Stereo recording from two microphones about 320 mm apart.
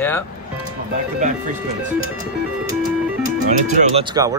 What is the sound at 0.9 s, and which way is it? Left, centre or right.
Speech, right.